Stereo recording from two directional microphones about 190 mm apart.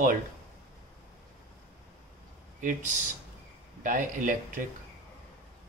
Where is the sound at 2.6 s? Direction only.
40° right (ahead or behind).